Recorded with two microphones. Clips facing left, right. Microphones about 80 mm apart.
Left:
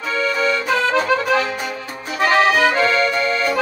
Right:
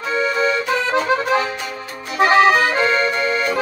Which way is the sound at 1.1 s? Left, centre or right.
Right.